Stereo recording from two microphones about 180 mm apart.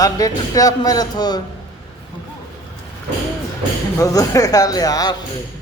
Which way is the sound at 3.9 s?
20° left (ahead or behind).